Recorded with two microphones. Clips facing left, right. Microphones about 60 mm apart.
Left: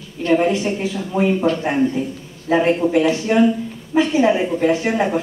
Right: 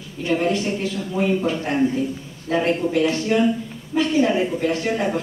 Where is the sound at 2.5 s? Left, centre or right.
Left.